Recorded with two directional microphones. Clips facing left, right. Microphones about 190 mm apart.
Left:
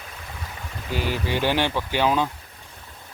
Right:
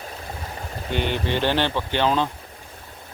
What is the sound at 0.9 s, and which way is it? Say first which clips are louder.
Speech: right 2 dB; 5° left (ahead or behind).